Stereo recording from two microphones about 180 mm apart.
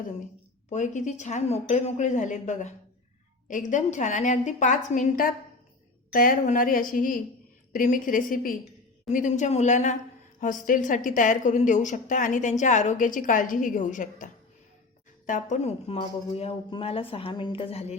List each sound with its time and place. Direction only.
0.7 s a woman's voice: 40° left (ahead or behind)
15.3 s a woman's voice: 45° left (ahead or behind)